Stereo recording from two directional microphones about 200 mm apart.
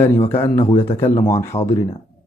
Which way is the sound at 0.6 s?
30° left (ahead or behind).